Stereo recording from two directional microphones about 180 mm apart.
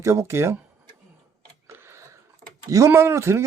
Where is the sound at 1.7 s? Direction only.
15° right (ahead or behind).